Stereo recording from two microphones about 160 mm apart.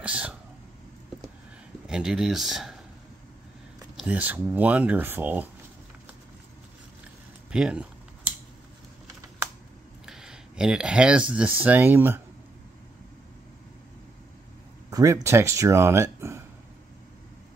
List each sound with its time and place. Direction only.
0.0 s a sound: 5° right (ahead or behind)
1.9 s speech: 5° right (ahead or behind)
3.9 s speech: 10° right (ahead or behind)
7.5 s speech: 5° right (ahead or behind)
10.0 s speech: 5° right (ahead or behind)
14.9 s speech: 20° right (ahead or behind)